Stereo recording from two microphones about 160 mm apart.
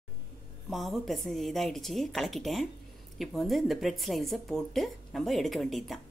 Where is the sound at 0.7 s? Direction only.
Centre (ahead or behind).